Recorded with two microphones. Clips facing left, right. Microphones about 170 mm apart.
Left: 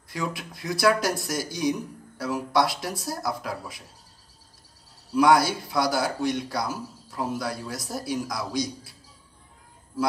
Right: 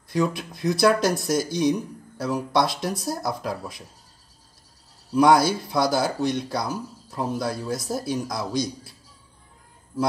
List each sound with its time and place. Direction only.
0.1 s speech: 25° right (ahead or behind)
5.1 s speech: 25° right (ahead or behind)